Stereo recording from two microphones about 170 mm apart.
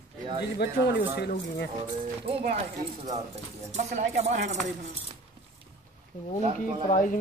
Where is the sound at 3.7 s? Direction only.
40° right (ahead or behind).